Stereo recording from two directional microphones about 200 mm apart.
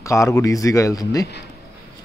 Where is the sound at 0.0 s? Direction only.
15° left (ahead or behind).